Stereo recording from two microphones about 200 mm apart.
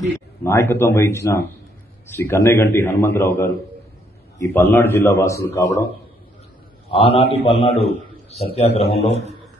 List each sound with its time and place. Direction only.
0.4 s a man's voice: 10° left (ahead or behind)
6.9 s a man's voice: 30° left (ahead or behind)